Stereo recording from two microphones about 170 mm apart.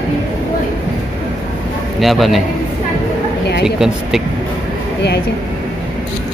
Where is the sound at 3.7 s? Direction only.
5° right (ahead or behind).